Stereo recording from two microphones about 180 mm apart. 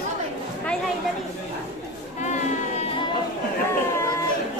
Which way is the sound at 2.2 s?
40° left (ahead or behind).